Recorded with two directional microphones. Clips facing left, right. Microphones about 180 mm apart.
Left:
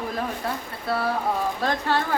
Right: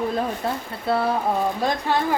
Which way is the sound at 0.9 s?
25° right (ahead or behind).